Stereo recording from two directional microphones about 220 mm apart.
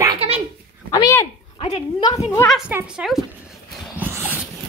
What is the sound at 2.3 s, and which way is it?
Speech, 10° left (ahead or behind).